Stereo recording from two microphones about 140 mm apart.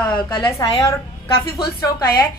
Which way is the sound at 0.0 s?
35° left (ahead or behind).